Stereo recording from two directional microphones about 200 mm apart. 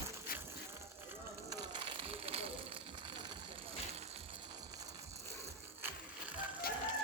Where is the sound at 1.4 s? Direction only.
25° right (ahead or behind).